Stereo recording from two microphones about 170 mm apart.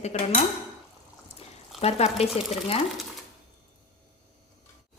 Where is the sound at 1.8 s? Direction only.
35° left (ahead or behind).